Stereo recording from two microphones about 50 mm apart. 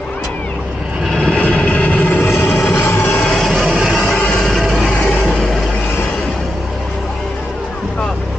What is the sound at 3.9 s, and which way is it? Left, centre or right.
Music, centre.